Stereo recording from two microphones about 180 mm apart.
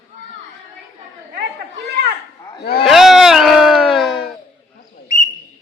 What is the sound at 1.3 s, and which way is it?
Chatter, 60° right (ahead or behind).